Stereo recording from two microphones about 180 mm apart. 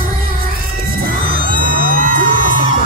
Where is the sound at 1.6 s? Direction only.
50° right (ahead or behind).